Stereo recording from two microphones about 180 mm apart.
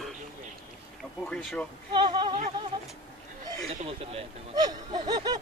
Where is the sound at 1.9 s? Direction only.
25° right (ahead or behind).